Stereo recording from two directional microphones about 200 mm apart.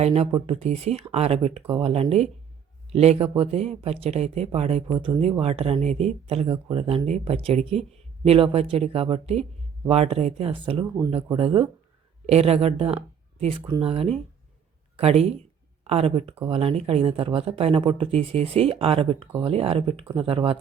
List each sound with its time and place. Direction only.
0.0 s speech: 30° right (ahead or behind)
4.9 s speech: 20° right (ahead or behind)